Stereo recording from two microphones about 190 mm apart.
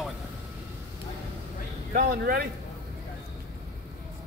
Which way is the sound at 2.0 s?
50° right (ahead or behind).